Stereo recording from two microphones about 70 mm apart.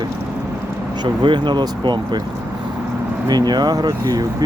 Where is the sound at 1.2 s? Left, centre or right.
Right.